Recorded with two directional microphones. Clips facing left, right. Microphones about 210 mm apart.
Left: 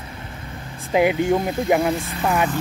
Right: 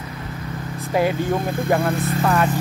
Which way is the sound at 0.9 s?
15° left (ahead or behind).